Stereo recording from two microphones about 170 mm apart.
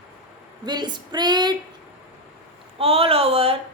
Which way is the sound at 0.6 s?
25° right (ahead or behind).